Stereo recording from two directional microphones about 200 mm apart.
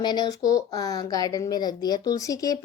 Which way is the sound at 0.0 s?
20° left (ahead or behind).